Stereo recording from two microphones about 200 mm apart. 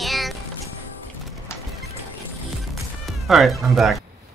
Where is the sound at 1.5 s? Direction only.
15° left (ahead or behind).